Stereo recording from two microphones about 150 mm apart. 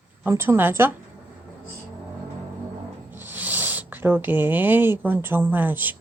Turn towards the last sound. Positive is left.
turn(degrees=-10)  # may be behind; listen again after turning